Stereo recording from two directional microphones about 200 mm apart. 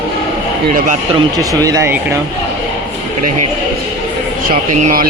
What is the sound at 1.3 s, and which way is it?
Speech, 15° right (ahead or behind).